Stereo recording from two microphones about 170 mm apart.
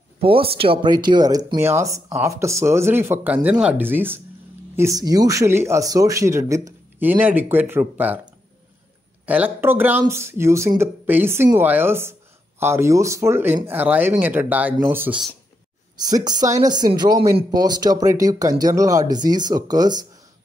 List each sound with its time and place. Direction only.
0.2 s speech: 35° right (ahead or behind); by 8.2 s 10° right (ahead or behind)
9.2 s speech: 10° right (ahead or behind)
16.0 s speech: 25° right (ahead or behind)